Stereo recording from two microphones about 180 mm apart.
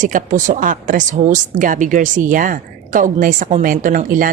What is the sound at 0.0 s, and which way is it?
Speech, 45° right (ahead or behind).